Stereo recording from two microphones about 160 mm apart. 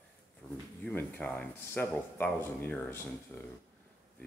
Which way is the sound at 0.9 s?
10° left (ahead or behind).